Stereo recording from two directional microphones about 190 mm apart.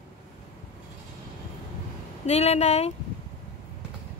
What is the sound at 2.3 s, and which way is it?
Speech, 35° left (ahead or behind).